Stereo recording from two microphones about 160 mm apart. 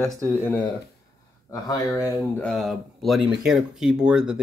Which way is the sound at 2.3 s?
5° left (ahead or behind).